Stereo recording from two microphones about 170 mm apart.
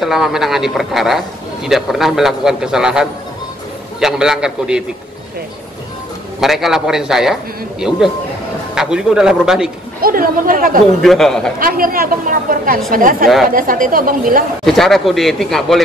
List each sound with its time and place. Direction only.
0.0 s a man's voice: centre (ahead or behind)
6.4 s a man's voice: centre (ahead or behind)
10.0 s a woman's voice: 55° right (ahead or behind)
11.0 s a man's voice: centre (ahead or behind)
11.6 s a woman's voice: 55° right (ahead or behind)
14.6 s a man's voice: centre (ahead or behind)